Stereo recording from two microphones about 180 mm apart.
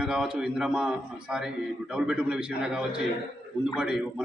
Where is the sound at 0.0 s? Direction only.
5° right (ahead or behind).